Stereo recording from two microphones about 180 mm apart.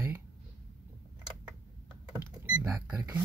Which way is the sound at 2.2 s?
15° right (ahead or behind).